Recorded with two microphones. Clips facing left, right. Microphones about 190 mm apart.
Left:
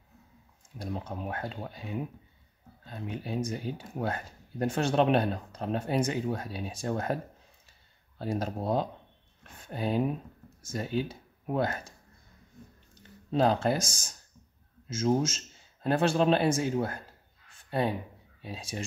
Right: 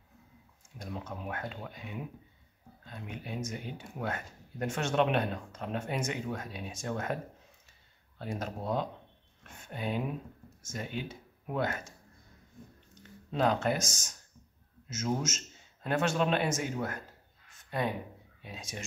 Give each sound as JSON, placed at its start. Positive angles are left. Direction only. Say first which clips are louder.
{"t": 0.7, "sound": "speech", "louder": "left 4 dB", "side_deg": 30}
{"t": 8.2, "sound": "speech", "louder": "left 5 dB", "side_deg": 35}
{"t": 13.3, "sound": "speech", "louder": "left 3 dB", "side_deg": 35}